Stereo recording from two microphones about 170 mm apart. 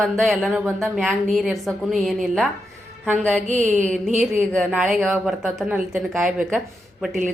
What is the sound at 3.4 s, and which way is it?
Mantra, 45° right (ahead or behind).